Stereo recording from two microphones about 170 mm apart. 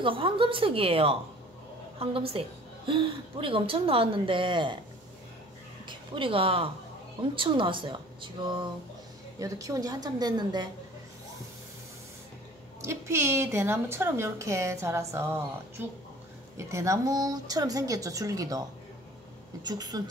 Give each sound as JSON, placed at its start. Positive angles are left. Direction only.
{"t": 0.0, "sound": "a woman's voice", "side_deg": -30}
{"t": 5.9, "sound": "a woman's voice", "side_deg": -30}
{"t": 12.8, "sound": "a woman's voice", "side_deg": -15}